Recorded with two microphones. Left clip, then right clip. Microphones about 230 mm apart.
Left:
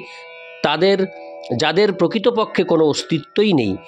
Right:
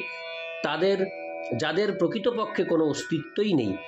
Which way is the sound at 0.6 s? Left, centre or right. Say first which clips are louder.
Left 9 dB; left.